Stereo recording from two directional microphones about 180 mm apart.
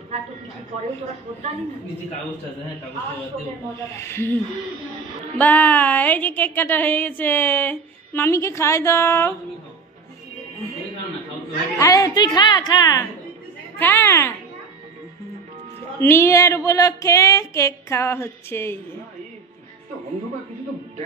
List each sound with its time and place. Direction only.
3.7 s speech: 15° left (ahead or behind)
5.4 s speech: 10° left (ahead or behind)
11.8 s a woman's voice: 20° left (ahead or behind)
16.0 s speech: 15° left (ahead or behind)